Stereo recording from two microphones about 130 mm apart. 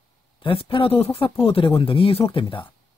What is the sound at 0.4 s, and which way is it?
Speech, 45° left (ahead or behind).